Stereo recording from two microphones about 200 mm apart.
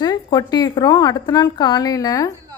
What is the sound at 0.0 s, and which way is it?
Speech, 20° left (ahead or behind).